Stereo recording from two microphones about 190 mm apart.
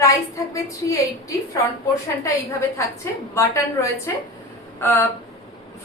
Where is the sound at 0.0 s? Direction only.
15° left (ahead or behind).